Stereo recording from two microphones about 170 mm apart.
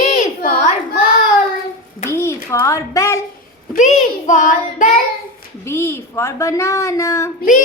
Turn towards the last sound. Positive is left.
turn(degrees=15)  # may be behind; listen again after turning